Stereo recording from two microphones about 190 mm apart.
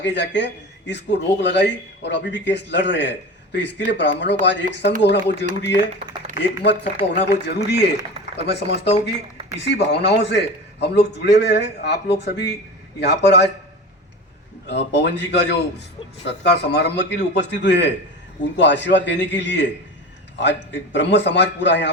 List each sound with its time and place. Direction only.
0.0 s a man's voice: 65° left (ahead or behind)
14.7 s a man's voice: 65° left (ahead or behind)